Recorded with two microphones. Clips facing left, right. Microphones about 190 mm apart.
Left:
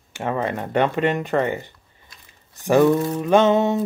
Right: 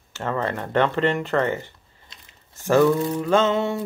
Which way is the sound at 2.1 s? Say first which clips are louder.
Even; 25° right (ahead or behind).